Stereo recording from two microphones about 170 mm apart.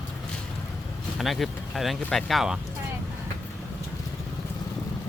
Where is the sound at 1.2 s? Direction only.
Centre (ahead or behind).